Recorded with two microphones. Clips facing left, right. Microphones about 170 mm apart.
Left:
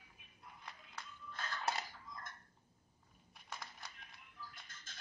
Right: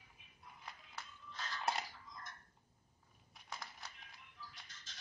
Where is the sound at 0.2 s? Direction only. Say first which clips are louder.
Left 1 dB; 55° left (ahead or behind).